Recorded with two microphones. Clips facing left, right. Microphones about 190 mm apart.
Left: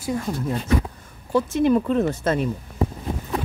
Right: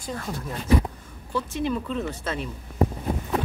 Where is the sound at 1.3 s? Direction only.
45° left (ahead or behind).